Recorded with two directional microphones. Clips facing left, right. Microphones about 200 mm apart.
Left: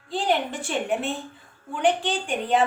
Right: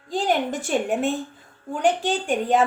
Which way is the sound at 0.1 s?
45° right (ahead or behind).